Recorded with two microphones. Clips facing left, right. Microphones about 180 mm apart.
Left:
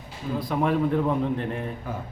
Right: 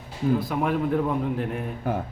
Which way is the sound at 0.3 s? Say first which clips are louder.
Left 1 dB; 5° right (ahead or behind).